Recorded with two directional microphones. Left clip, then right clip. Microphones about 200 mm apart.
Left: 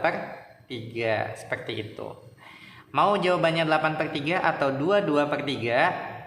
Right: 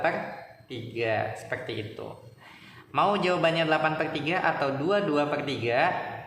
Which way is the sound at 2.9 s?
20° left (ahead or behind).